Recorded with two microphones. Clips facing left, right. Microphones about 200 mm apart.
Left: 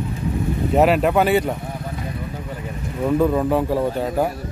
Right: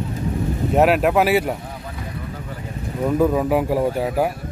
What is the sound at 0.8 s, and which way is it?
Speech, 5° right (ahead or behind).